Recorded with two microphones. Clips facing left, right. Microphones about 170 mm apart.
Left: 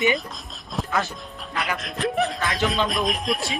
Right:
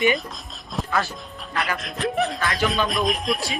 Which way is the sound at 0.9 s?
20° left (ahead or behind).